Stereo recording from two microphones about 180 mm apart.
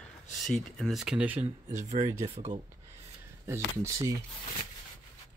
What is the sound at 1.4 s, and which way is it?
Speech, 40° right (ahead or behind).